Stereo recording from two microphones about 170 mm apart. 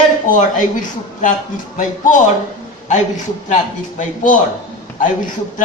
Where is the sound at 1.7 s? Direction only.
50° left (ahead or behind).